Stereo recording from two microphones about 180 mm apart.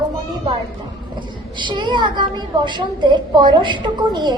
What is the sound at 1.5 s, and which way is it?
A woman's voice, 25° right (ahead or behind).